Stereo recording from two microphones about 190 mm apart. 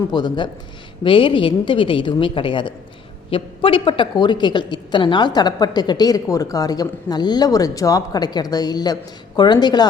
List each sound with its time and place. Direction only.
0.1 s a woman's voice: 25° left (ahead or behind)